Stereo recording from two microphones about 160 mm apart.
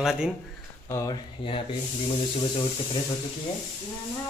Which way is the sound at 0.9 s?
20° left (ahead or behind).